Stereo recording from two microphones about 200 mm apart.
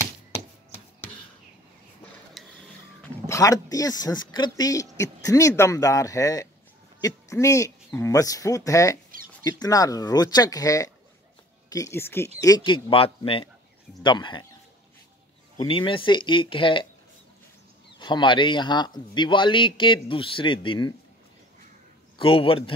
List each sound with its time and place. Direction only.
2.4 s a sound: centre (ahead or behind)
3.3 s speech: 15° left (ahead or behind)
15.6 s speech: 25° left (ahead or behind)
17.9 s speech: 20° left (ahead or behind)
22.2 s speech: 25° left (ahead or behind)